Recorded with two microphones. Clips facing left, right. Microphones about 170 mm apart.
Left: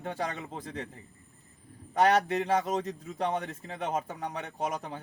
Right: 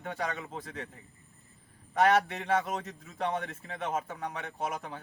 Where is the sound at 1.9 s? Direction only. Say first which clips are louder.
Left 1 dB; 35° left (ahead or behind).